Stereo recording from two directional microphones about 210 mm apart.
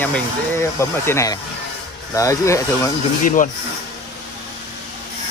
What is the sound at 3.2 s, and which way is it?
Speech, 40° left (ahead or behind).